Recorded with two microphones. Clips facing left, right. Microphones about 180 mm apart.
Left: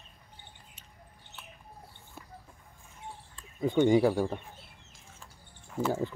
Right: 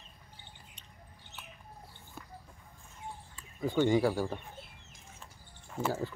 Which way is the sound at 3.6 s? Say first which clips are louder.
Left 4 dB; 20° left (ahead or behind).